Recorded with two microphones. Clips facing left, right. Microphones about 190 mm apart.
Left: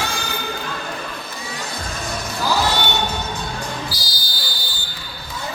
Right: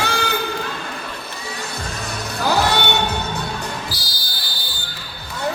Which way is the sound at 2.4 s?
65° right (ahead or behind).